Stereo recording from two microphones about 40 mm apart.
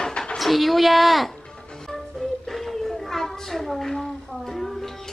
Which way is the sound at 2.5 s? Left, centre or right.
Centre.